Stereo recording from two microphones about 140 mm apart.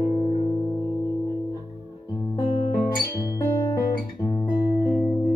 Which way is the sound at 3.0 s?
25° left (ahead or behind).